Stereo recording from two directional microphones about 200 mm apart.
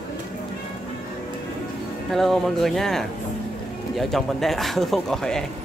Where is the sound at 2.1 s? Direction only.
Centre (ahead or behind).